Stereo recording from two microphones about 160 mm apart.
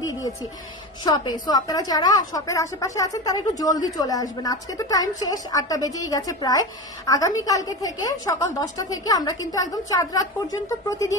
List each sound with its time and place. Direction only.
1.0 s a woman's voice: 25° left (ahead or behind)